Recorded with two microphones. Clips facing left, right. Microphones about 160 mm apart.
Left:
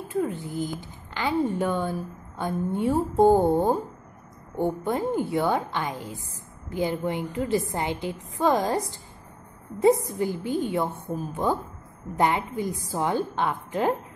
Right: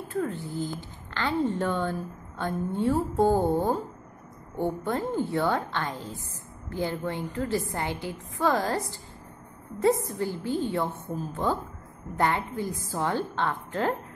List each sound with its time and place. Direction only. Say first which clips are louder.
0.1 s a woman's voice: left 3 dB; 15° left (ahead or behind)
10.0 s a woman's voice: left 2 dB; 15° left (ahead or behind)